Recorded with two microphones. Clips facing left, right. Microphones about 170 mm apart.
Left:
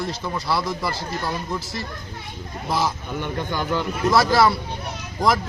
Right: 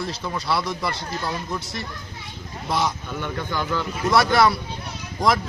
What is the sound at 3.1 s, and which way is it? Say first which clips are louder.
Speech: left 1 dB; 20° left (ahead or behind).